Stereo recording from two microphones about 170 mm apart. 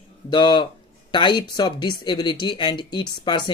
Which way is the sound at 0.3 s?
25° left (ahead or behind).